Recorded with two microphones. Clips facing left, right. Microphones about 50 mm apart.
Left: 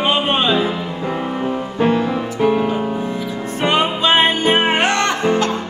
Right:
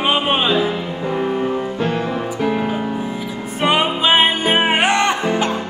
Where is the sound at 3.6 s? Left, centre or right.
Centre.